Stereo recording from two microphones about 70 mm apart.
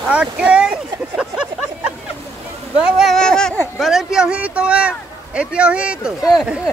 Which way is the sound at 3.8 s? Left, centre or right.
Centre.